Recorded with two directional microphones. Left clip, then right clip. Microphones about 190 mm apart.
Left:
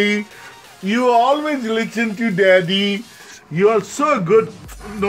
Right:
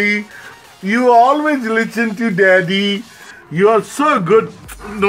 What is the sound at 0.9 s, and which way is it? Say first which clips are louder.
Speech: right 4 dB; 20° left (ahead or behind).